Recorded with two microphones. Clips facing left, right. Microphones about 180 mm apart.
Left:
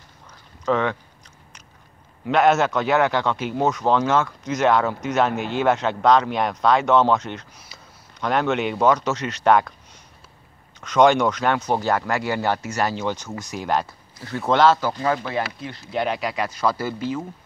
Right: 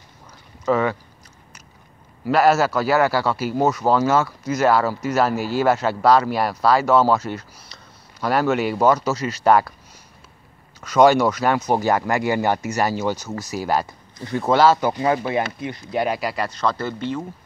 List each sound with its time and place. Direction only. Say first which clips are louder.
0.7 s a man's voice: right 2 dB; 5° right (ahead or behind)
2.2 s a man's voice: right 1 dB; 5° right (ahead or behind)
10.8 s a man's voice: right 2 dB; 5° right (ahead or behind)